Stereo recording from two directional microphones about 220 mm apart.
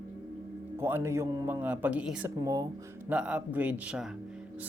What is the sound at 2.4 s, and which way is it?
Speech, 15° right (ahead or behind).